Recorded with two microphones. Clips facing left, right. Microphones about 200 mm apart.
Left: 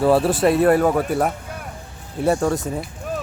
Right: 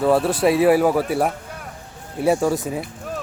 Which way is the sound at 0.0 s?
Centre (ahead or behind).